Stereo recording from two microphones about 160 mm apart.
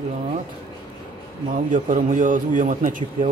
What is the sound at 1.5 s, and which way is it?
Speech, 55° right (ahead or behind).